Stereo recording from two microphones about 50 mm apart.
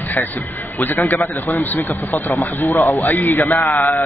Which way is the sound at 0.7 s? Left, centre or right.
Left.